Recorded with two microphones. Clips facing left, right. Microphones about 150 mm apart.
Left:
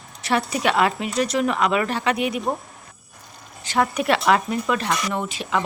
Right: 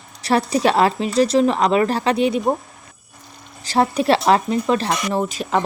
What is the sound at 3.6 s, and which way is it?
Speech, 30° right (ahead or behind).